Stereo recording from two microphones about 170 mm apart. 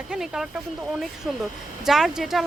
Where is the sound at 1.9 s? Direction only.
5° right (ahead or behind).